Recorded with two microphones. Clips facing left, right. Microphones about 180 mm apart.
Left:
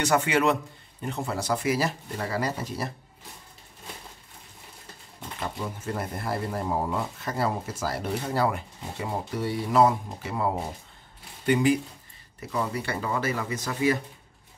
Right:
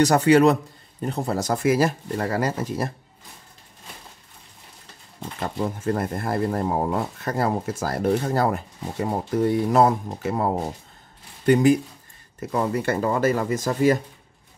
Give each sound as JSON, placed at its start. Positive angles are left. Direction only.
{"t": 0.0, "sound": "a man's voice", "side_deg": -40}
{"t": 5.4, "sound": "speech", "side_deg": -50}